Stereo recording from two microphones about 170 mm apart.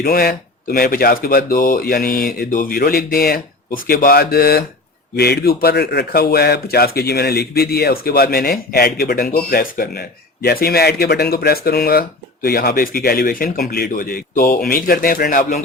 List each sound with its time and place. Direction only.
0.0 s speech: 65° left (ahead or behind)